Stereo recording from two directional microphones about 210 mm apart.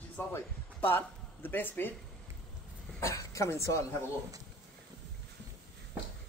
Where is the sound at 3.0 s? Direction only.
15° left (ahead or behind).